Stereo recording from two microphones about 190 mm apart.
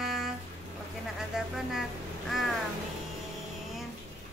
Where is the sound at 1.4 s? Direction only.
Centre (ahead or behind).